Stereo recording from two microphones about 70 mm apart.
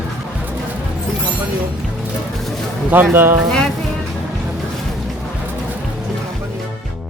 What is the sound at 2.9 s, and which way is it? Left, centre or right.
Speech, right.